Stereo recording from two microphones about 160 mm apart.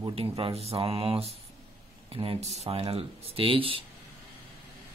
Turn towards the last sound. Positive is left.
turn(degrees=-35)  # may be behind; listen again after turning